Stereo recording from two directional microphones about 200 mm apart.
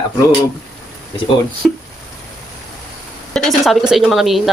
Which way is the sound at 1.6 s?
Centre (ahead or behind).